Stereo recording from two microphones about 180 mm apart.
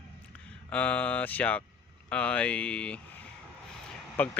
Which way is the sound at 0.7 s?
10° left (ahead or behind).